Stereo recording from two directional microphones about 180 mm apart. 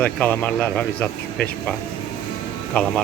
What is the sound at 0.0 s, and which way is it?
Speech, 10° left (ahead or behind).